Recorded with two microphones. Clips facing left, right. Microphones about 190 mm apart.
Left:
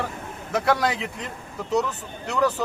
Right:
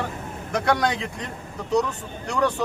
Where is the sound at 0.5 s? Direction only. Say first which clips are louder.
Even; 5° left (ahead or behind).